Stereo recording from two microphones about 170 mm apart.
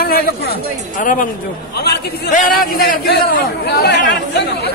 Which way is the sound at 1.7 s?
75° left (ahead or behind).